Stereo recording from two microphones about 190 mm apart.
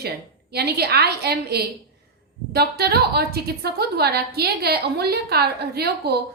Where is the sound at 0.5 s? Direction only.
55° right (ahead or behind).